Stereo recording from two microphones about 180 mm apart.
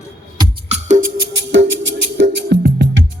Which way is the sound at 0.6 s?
40° right (ahead or behind).